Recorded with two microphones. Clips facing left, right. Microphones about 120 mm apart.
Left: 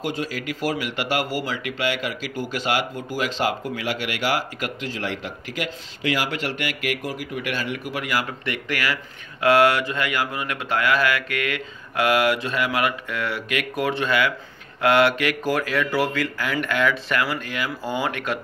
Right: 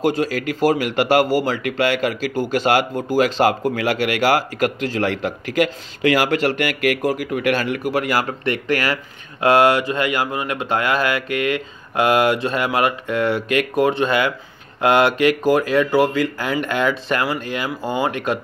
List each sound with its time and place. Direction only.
0.0 s speech: 45° right (ahead or behind); by 6.2 s 60° right (ahead or behind)
6.2 s speech: 50° right (ahead or behind)
9.4 s speech: 25° right (ahead or behind)